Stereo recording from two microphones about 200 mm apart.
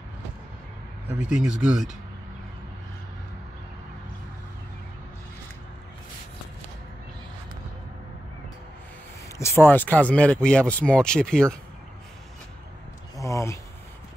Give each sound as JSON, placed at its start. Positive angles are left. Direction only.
{"t": 1.3, "sound": "speech", "side_deg": -5}
{"t": 9.4, "sound": "speech", "side_deg": 10}
{"t": 13.1, "sound": "a sound", "side_deg": 15}